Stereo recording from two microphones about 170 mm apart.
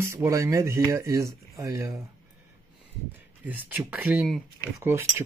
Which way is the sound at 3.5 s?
10° right (ahead or behind).